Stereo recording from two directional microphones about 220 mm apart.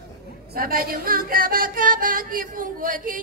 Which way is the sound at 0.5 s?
40° right (ahead or behind).